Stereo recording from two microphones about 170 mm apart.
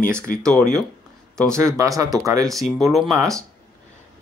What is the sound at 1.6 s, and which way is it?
Speech, 20° right (ahead or behind).